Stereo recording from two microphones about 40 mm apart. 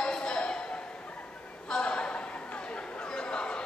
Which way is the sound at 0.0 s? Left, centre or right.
Left.